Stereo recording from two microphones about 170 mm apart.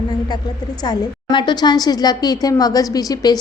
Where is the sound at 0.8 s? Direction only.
25° left (ahead or behind).